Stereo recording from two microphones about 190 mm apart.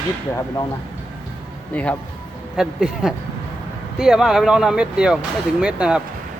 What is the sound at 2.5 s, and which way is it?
Speech, 5° right (ahead or behind).